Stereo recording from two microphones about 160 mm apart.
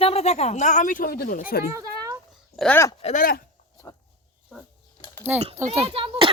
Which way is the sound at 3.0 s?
45° left (ahead or behind).